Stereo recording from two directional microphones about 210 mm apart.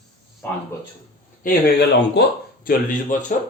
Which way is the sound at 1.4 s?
45° left (ahead or behind).